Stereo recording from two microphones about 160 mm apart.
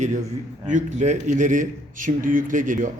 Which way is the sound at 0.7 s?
50° right (ahead or behind).